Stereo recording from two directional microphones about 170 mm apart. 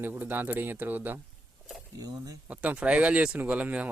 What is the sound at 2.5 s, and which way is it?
Speech, 10° right (ahead or behind).